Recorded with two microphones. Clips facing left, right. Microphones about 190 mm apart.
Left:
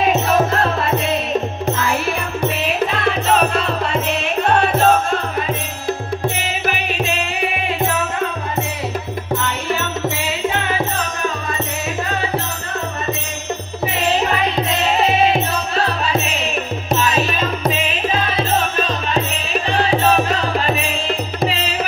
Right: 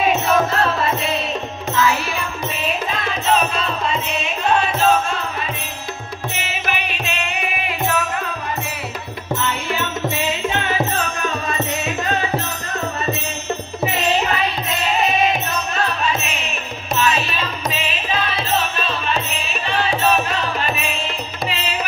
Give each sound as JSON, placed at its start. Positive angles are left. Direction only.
{"t": 1.7, "sound": "music", "side_deg": 50}
{"t": 2.6, "sound": "music", "side_deg": 65}
{"t": 6.7, "sound": "music", "side_deg": 40}
{"t": 14.7, "sound": "music", "side_deg": 30}